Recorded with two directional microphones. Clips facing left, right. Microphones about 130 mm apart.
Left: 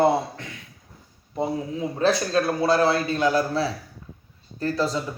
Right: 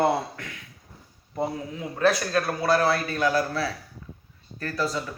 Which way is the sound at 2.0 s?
25° left (ahead or behind).